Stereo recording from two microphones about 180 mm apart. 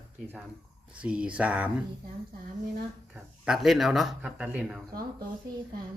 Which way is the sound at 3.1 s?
5° right (ahead or behind).